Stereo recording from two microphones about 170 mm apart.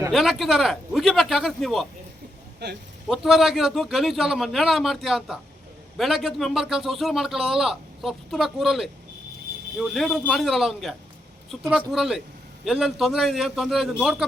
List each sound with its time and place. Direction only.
0.1 s a man's voice: centre (ahead or behind)
2.6 s speech: 90° right
3.1 s a man's voice: centre (ahead or behind)